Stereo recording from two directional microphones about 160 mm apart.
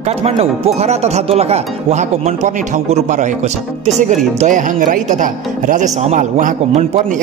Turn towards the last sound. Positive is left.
turn(degrees=-50)  # may be behind; listen again after turning